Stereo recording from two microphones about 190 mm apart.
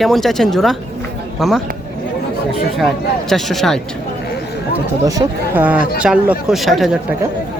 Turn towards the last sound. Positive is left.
turn(degrees=0)  # may be behind; listen again after turning